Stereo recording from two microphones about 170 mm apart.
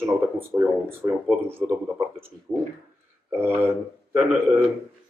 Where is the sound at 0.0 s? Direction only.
15° right (ahead or behind).